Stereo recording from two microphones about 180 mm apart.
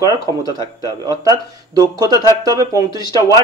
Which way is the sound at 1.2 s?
20° right (ahead or behind).